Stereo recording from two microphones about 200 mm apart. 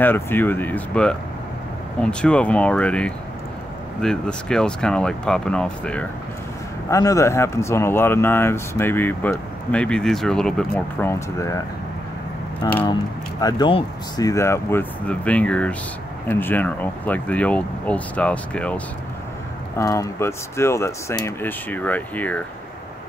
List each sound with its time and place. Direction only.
0.0 s speech: 10° left (ahead or behind)
6.9 s speech: 15° left (ahead or behind)
12.6 s speech: 20° left (ahead or behind)
19.8 s speech: 15° left (ahead or behind)